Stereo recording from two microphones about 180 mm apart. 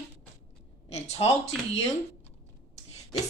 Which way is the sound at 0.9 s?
35° left (ahead or behind).